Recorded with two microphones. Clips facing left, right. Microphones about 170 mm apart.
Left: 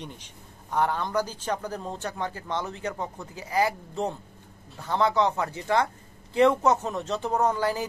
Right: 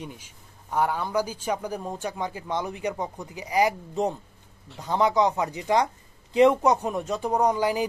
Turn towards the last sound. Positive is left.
turn(degrees=-15)  # may be behind; listen again after turning